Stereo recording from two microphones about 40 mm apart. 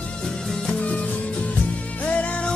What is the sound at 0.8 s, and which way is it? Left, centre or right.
Music, left.